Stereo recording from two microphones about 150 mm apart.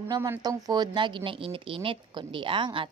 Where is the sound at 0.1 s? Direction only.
25° right (ahead or behind).